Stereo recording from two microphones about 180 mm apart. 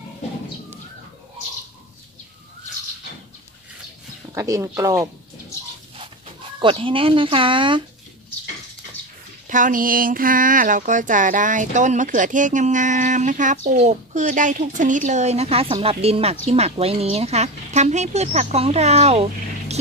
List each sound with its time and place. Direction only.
4.3 s speech: 20° right (ahead or behind)
5.9 s speech: 30° right (ahead or behind)
9.5 s a woman's voice: 45° right (ahead or behind)